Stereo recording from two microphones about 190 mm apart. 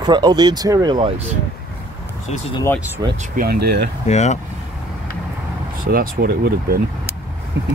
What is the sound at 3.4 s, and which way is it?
Speech, 55° right (ahead or behind).